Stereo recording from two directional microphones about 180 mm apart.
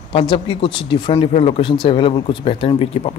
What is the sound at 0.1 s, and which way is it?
Speech, 30° left (ahead or behind).